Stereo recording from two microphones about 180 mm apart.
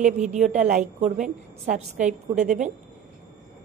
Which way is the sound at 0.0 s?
40° right (ahead or behind).